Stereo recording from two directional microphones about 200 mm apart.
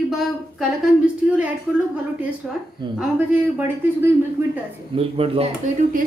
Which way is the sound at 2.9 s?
10° right (ahead or behind).